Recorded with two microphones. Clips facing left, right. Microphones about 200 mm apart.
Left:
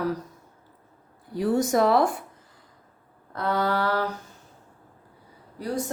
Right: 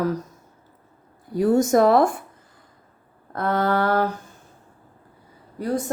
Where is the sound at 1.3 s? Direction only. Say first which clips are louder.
Right 5 dB; 50° right (ahead or behind).